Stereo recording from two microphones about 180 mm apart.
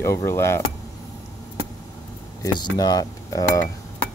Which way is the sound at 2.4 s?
20° left (ahead or behind).